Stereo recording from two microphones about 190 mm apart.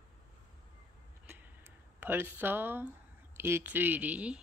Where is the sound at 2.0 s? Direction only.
10° right (ahead or behind).